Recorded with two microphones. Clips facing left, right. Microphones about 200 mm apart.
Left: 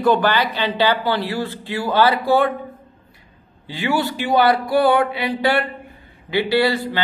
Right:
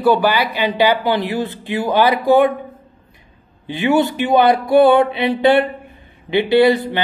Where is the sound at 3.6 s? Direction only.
20° right (ahead or behind).